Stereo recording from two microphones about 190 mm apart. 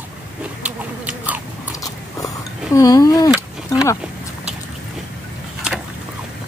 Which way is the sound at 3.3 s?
5° right (ahead or behind).